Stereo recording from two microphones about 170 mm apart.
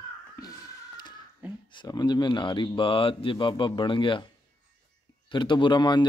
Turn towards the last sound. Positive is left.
turn(degrees=25)  # may be behind; listen again after turning